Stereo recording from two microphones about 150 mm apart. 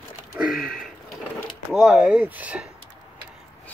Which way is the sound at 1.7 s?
5° right (ahead or behind).